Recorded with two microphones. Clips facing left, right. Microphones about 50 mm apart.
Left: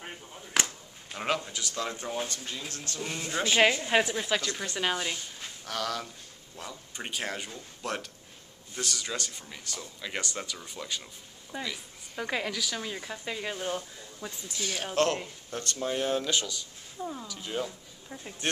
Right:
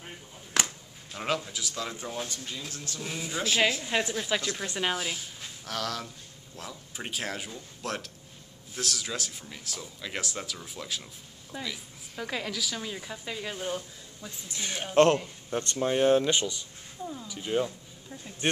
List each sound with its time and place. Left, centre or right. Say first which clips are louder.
0.0 s a sound: left 2 dB; centre
1.1 s a woman's voice: even; centre
5.4 s a sound: even; centre
6.5 s a woman's voice: even; centre
14.6 s speech: right 5 dB; right
17.0 s speech: left 1 dB; centre
17.3 s speech: right 5 dB; centre